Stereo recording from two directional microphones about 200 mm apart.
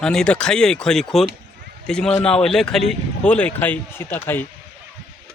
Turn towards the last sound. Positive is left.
turn(degrees=10)  # may be behind; listen again after turning